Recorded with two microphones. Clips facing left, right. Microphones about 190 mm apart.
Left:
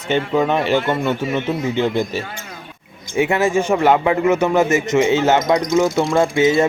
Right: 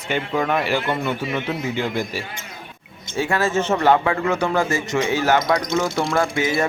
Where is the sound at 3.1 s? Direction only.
20° left (ahead or behind).